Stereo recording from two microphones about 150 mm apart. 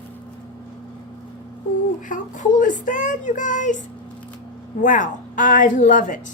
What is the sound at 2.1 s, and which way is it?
A woman's voice, 60° left (ahead or behind).